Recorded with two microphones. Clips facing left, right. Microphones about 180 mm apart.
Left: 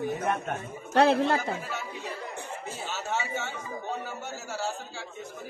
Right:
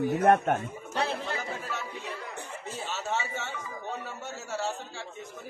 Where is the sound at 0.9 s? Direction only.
70° left (ahead or behind).